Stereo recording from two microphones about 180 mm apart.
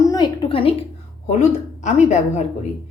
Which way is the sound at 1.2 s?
40° left (ahead or behind).